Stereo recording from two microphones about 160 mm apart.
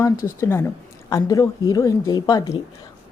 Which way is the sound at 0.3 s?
15° left (ahead or behind).